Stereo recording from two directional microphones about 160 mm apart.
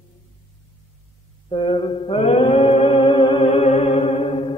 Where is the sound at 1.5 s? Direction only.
30° left (ahead or behind).